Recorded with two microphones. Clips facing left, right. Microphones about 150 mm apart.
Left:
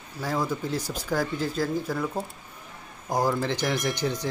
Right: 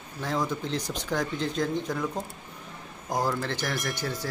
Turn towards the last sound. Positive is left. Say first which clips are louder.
# left 4 dB
turn(degrees=20)  # may be behind; listen again after turning